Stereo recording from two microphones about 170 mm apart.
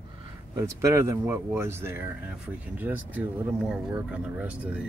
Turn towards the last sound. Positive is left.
turn(degrees=-10)  # may be behind; listen again after turning